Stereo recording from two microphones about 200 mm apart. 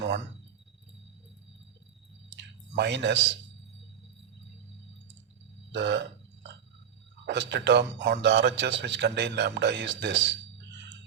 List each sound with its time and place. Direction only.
2.3 s a sound: 60° right (ahead or behind)
5.7 s a man's voice: 60° right (ahead or behind)
7.3 s a man's voice: 60° right (ahead or behind)